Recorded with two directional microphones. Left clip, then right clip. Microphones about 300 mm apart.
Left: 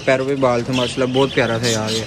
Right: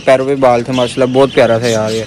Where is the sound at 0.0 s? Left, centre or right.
Centre.